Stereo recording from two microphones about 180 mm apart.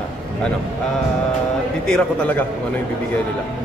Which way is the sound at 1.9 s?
10° left (ahead or behind).